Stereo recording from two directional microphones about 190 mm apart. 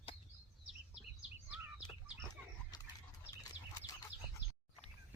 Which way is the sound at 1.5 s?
Centre (ahead or behind).